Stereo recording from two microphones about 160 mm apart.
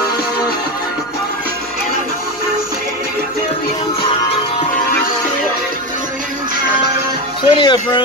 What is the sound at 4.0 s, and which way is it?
Music, 30° left (ahead or behind).